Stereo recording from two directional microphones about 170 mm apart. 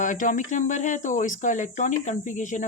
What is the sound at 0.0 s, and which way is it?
Speech, 50° left (ahead or behind).